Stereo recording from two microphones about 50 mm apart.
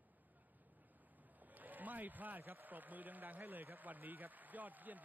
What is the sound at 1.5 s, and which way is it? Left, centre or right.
A man's voice, right.